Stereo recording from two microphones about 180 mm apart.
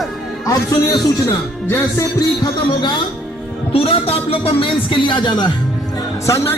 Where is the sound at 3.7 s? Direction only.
30° left (ahead or behind).